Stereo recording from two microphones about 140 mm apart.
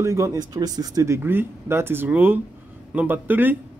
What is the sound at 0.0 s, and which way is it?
Speech, 20° right (ahead or behind).